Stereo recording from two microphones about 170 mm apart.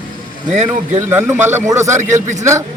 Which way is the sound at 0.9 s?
10° right (ahead or behind).